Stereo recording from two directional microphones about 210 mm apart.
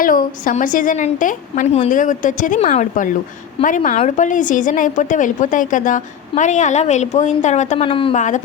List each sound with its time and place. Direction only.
0.0 s a woman's voice: 40° left (ahead or behind)